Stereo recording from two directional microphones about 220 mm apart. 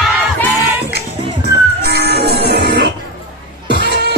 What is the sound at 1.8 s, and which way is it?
Music, 45° right (ahead or behind).